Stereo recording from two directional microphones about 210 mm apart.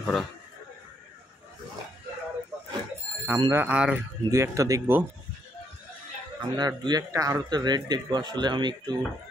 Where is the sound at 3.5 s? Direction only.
10° right (ahead or behind).